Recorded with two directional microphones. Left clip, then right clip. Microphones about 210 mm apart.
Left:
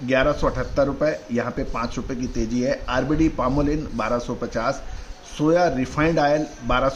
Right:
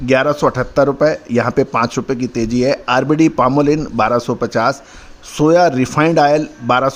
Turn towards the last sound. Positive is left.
turn(degrees=-45)  # may be behind; listen again after turning